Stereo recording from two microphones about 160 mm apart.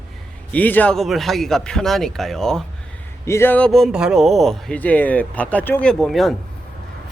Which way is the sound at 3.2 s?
15° left (ahead or behind).